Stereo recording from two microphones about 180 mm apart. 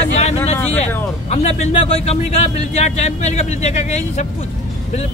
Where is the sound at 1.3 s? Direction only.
35° left (ahead or behind).